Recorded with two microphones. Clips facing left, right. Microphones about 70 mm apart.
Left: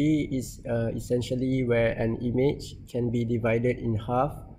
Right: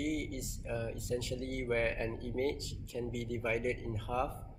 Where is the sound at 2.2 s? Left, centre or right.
Left.